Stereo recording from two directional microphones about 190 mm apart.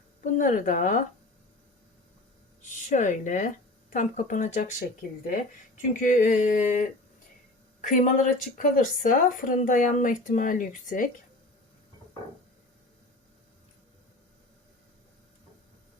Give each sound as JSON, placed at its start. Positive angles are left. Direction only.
{"t": 0.2, "sound": "speech", "side_deg": 45}
{"t": 2.6, "sound": "speech", "side_deg": 40}